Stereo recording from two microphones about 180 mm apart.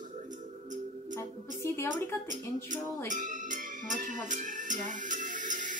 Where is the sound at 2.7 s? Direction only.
45° right (ahead or behind).